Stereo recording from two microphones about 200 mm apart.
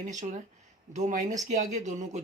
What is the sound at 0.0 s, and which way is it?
Speech, 40° right (ahead or behind).